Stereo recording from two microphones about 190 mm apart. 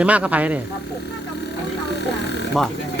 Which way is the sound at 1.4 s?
60° left (ahead or behind).